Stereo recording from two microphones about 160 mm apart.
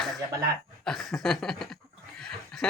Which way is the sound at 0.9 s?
Centre (ahead or behind).